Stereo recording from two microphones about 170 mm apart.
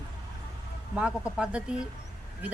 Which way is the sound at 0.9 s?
5° right (ahead or behind).